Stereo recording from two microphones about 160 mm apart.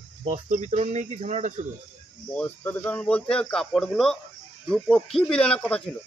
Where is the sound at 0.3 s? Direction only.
50° right (ahead or behind).